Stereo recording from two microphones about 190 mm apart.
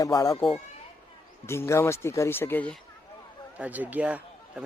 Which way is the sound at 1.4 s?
15° left (ahead or behind).